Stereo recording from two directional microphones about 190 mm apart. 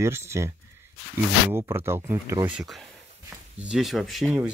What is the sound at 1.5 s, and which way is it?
Speech, 15° right (ahead or behind).